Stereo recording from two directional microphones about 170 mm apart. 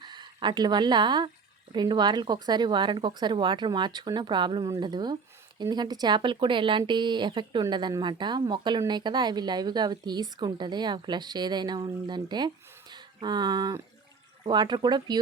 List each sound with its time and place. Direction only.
0.0 s a woman's voice: 25° right (ahead or behind)
12.9 s a sound: 25° right (ahead or behind)
14.4 s a woman's voice: 25° right (ahead or behind)